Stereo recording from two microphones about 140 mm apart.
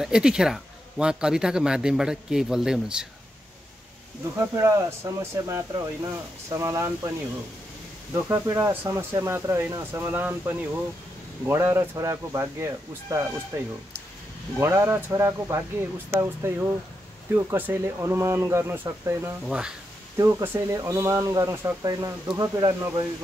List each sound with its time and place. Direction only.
0.0 s speech: 5° right (ahead or behind)
4.4 s speech: 20° right (ahead or behind)
8.1 s speech: 20° right (ahead or behind)
19.4 s speech: 5° right (ahead or behind)
20.2 s speech: 20° right (ahead or behind)